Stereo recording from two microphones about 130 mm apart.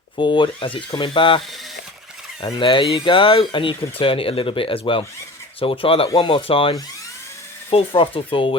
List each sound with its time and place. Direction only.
0.2 s speech: 40° left (ahead or behind)
2.6 s speech: 40° left (ahead or behind)